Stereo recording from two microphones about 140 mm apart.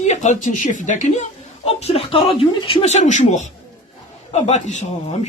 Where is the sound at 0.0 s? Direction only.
55° left (ahead or behind); by 2.8 s 40° left (ahead or behind).